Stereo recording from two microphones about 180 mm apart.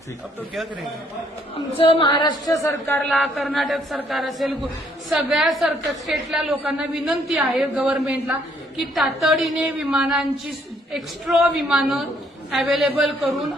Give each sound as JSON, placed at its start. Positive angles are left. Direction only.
{"t": 1.8, "sound": "speech", "side_deg": 30}
{"t": 3.0, "sound": "a woman's voice", "side_deg": 0}